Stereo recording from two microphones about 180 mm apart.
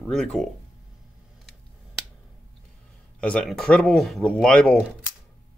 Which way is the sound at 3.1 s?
5° left (ahead or behind).